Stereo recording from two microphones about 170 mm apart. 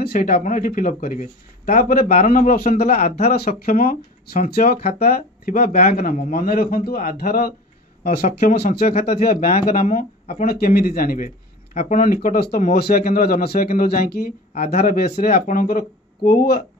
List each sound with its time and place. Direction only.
0.0 s speech: 60° left (ahead or behind)
3.3 s speech: 60° left (ahead or behind)
8.2 s speech: 45° left (ahead or behind)
9.0 s speech: 65° left (ahead or behind)
9.3 s speech: 50° left (ahead or behind)
11.7 s speech: 45° left (ahead or behind); by 14.3 s 65° left (ahead or behind)
14.5 s speech: 40° left (ahead or behind); by 16.6 s 60° left (ahead or behind)